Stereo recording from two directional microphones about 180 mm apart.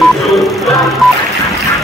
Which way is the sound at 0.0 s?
Centre (ahead or behind).